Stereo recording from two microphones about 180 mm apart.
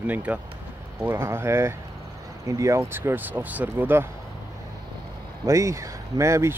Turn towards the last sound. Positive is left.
turn(degrees=-15)  # may be behind; listen again after turning